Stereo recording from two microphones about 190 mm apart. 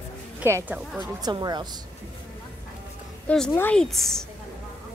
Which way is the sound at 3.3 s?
5° left (ahead or behind).